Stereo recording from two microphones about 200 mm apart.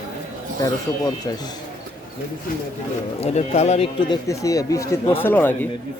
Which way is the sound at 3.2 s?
35° left (ahead or behind).